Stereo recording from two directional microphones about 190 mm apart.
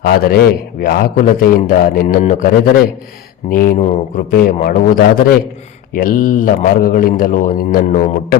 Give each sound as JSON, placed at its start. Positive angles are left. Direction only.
{"t": 0.0, "sound": "a man's voice", "side_deg": 55}